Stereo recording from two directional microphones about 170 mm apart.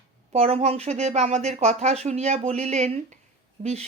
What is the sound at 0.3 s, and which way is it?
Speech, 35° right (ahead or behind).